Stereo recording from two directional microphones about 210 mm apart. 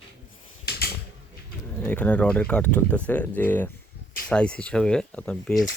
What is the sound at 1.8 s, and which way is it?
Speech, 5° left (ahead or behind).